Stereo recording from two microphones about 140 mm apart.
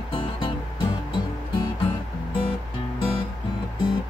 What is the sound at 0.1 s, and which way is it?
Music, 35° left (ahead or behind).